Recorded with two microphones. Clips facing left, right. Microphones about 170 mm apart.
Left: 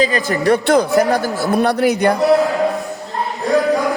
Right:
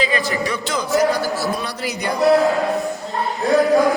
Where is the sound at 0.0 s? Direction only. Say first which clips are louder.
Left 5 dB; 45° left (ahead or behind).